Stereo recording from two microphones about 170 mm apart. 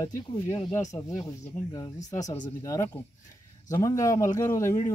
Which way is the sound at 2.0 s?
20° left (ahead or behind).